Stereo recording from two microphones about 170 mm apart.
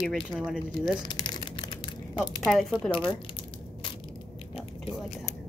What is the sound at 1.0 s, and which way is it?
Crumpling, 25° left (ahead or behind).